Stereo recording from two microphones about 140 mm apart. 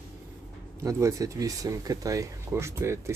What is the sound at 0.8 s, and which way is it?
Speech, 20° right (ahead or behind).